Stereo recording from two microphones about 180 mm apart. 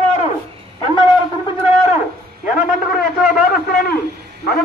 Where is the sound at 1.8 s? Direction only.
40° left (ahead or behind).